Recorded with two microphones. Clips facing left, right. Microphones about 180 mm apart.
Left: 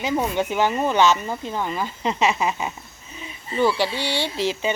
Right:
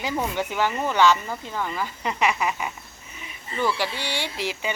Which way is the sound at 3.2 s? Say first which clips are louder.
Left 5 dB; 20° left (ahead or behind).